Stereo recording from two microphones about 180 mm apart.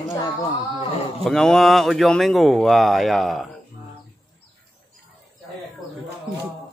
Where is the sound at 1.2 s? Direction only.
Centre (ahead or behind).